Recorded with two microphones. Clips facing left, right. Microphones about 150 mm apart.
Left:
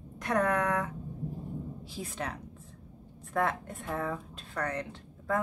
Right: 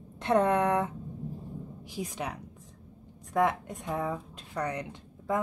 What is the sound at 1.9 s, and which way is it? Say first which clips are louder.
Speech: right 3 dB; 15° right (ahead or behind).